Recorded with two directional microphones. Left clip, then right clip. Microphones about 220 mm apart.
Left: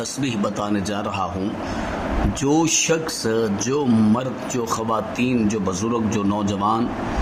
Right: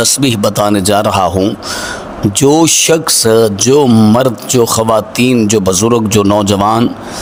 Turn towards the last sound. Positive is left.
turn(degrees=-50)  # may be behind; listen again after turning